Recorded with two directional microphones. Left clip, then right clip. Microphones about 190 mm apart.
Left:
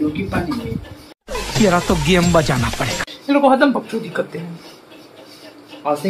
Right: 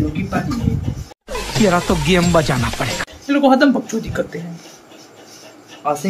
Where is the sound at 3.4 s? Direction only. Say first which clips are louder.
Even; 20° right (ahead or behind).